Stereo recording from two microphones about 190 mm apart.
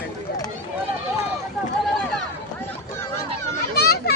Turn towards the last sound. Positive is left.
turn(degrees=60)  # may be behind; listen again after turning